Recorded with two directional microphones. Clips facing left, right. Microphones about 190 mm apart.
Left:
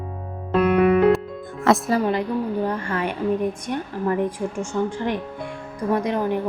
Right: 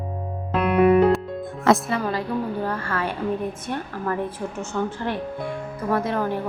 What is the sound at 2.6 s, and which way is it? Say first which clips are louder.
A woman's voice: left 2 dB; 15° left (ahead or behind).